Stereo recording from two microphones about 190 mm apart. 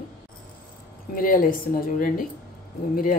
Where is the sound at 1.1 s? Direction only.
50° left (ahead or behind).